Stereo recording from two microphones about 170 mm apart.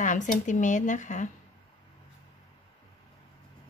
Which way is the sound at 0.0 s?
50° left (ahead or behind).